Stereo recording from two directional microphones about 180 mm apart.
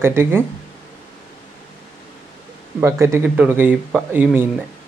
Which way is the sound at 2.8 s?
15° right (ahead or behind).